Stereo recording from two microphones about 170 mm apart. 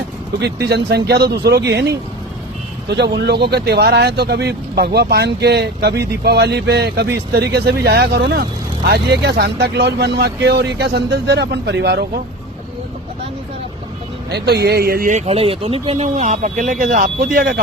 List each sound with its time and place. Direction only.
0.3 s speech: 80° right
14.3 s speech: 75° right (ahead or behind)
15.1 s speech: 35° right (ahead or behind); by 17.2 s 55° right (ahead or behind)
17.3 s speech: 65° right (ahead or behind)